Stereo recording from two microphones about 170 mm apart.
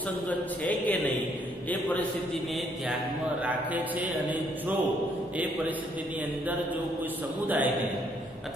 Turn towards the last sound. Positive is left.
turn(degrees=-10)  # may be behind; listen again after turning